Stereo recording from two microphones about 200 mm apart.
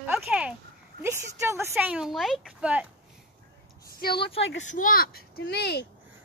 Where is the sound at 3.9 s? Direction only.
50° left (ahead or behind).